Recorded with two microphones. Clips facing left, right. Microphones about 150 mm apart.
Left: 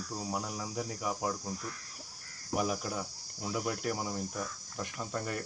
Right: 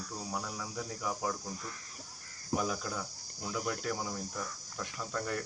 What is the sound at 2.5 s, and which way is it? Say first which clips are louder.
Cricket: left 1 dB; 15° left (ahead or behind).